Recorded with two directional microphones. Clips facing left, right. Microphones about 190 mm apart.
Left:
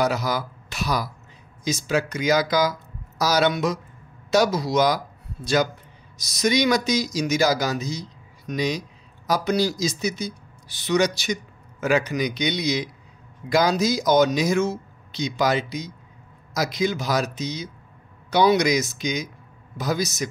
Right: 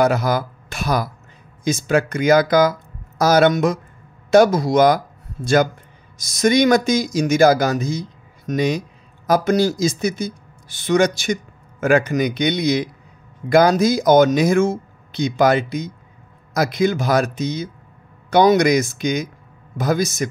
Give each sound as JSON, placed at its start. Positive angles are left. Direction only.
{"t": 0.0, "sound": "speech", "side_deg": -55}